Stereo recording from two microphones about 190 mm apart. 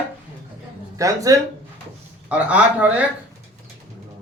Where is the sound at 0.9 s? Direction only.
15° right (ahead or behind).